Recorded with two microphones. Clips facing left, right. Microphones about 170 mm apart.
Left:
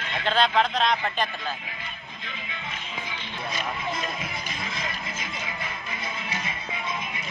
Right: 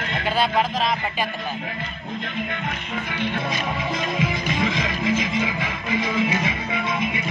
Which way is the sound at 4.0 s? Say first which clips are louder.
Right 9 dB; 90° right.